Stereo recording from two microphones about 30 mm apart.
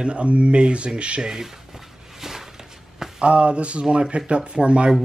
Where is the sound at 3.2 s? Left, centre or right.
Right.